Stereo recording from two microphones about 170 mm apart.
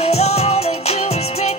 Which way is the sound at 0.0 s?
35° left (ahead or behind).